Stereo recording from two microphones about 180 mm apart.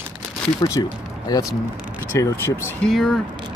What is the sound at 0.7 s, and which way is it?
Speech, 20° left (ahead or behind).